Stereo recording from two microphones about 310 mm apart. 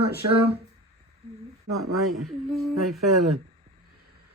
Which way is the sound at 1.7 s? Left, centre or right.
Right.